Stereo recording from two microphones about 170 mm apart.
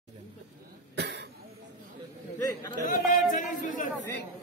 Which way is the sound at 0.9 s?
90° right.